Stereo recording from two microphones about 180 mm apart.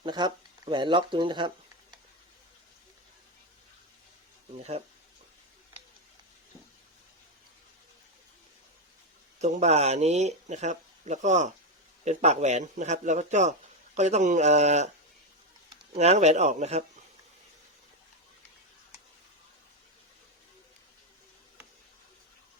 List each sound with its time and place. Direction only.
0.0 s speech: 25° right (ahead or behind)
9.4 s speech: 40° right (ahead or behind)